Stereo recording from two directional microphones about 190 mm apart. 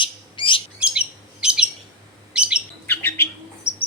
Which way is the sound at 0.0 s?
25° left (ahead or behind).